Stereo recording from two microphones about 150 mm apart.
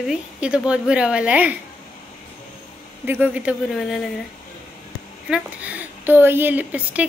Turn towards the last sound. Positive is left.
turn(degrees=-10)  # may be behind; listen again after turning